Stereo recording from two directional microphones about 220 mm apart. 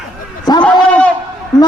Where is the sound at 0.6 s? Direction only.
5° left (ahead or behind).